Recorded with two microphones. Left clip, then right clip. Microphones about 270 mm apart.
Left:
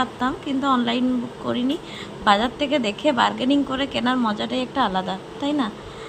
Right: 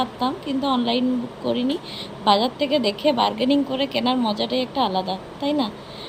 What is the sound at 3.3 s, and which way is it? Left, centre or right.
Speech, centre.